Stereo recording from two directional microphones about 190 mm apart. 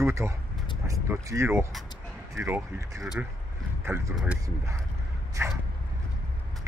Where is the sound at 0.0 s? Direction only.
15° right (ahead or behind).